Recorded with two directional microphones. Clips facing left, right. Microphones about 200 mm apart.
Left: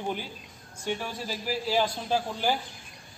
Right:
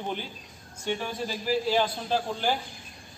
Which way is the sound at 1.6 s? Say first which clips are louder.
Right 1 dB; 5° left (ahead or behind).